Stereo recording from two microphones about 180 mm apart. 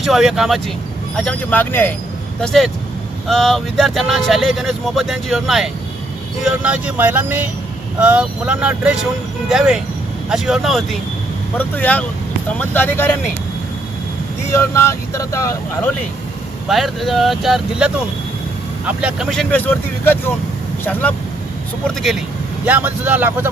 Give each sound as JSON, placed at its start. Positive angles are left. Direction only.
{"t": 0.0, "sound": "speech", "side_deg": 0}
{"t": 14.5, "sound": "speech", "side_deg": 15}
{"t": 16.6, "sound": "speech", "side_deg": 0}
{"t": 19.0, "sound": "speech", "side_deg": 0}
{"t": 22.6, "sound": "speech", "side_deg": -10}